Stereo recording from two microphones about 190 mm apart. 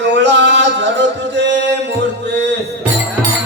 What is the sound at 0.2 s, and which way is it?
Music, 65° right (ahead or behind).